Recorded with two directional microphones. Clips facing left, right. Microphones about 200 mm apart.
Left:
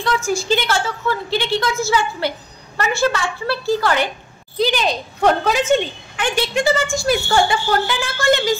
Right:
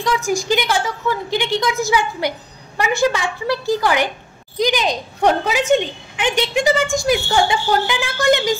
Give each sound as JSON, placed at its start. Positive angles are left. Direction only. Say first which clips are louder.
{"t": 0.0, "sound": "a woman's voice", "louder": "right 1 dB", "side_deg": -15}